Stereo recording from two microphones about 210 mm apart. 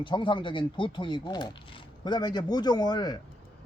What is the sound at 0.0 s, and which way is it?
A man's voice, 25° left (ahead or behind).